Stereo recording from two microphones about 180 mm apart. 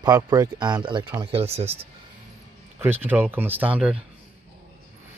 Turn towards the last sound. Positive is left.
turn(degrees=-5)  # may be behind; listen again after turning